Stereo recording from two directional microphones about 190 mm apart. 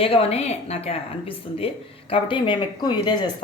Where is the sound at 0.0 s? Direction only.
30° left (ahead or behind).